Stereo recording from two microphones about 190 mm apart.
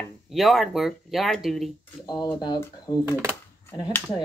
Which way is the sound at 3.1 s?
10° right (ahead or behind).